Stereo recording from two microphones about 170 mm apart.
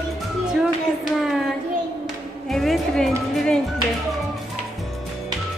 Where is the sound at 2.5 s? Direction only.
Centre (ahead or behind).